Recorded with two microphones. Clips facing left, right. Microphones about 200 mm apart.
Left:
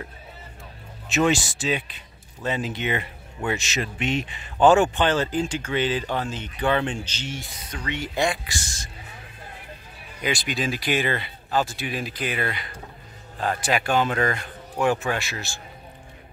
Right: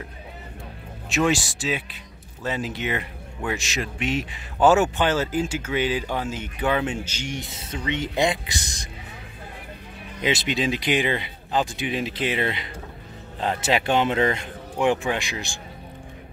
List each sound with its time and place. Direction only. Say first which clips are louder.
1.0 s speech: left 1 dB; centre (ahead or behind); by 8.7 s 20° right (ahead or behind)
10.2 s speech: right 3 dB; 25° right (ahead or behind)